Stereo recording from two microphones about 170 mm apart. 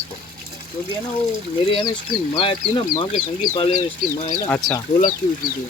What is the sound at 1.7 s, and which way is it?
Speech, 30° left (ahead or behind).